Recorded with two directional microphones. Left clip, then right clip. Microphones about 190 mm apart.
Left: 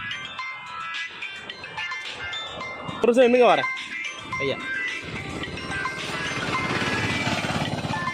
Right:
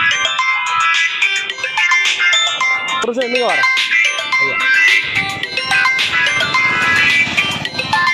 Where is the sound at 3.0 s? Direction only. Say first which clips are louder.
Right 1 dB; 15° left (ahead or behind).